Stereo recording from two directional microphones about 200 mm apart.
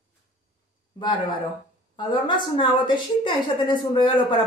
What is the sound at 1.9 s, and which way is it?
A woman's voice, 25° left (ahead or behind).